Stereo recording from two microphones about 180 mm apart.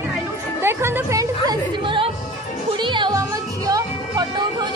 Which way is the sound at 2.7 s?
25° right (ahead or behind).